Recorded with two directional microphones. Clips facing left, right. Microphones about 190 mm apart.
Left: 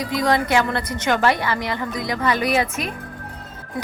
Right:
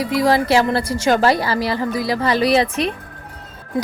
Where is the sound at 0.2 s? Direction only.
30° right (ahead or behind).